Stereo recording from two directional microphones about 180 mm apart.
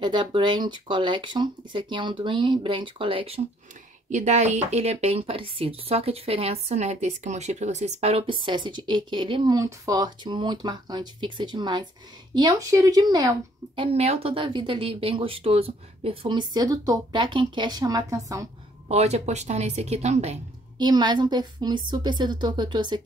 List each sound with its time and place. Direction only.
0.0 s a woman's voice: 25° right (ahead or behind)
13.9 s speech: 35° right (ahead or behind); by 18.5 s 20° right (ahead or behind)
18.9 s a woman's voice: 35° right (ahead or behind)
20.7 s speech: 25° right (ahead or behind)